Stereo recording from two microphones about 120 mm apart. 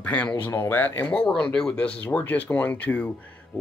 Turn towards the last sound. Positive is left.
turn(degrees=15)  # may be behind; listen again after turning